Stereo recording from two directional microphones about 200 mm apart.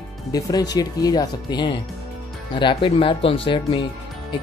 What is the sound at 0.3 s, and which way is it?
Speech, 20° left (ahead or behind).